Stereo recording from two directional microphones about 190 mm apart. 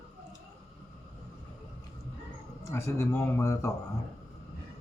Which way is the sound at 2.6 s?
15° left (ahead or behind).